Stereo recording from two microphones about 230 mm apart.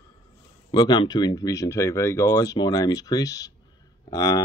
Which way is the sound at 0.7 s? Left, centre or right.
Centre.